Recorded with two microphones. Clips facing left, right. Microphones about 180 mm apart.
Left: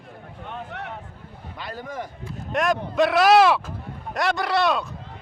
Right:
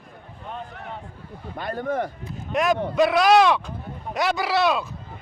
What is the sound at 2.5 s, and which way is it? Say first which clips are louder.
Speech: right 1 dB; centre (ahead or behind).